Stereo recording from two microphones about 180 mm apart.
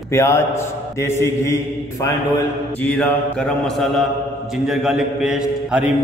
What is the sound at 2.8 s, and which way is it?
Mantra, 5° left (ahead or behind).